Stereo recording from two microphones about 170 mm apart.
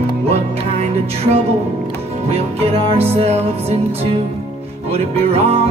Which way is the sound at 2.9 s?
35° right (ahead or behind).